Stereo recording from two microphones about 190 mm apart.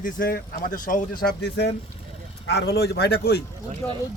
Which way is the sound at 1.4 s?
60° left (ahead or behind).